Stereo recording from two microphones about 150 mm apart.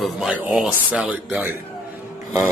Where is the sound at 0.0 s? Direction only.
5° right (ahead or behind).